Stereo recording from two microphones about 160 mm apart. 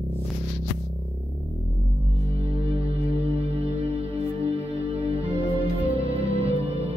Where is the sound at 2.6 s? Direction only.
35° right (ahead or behind).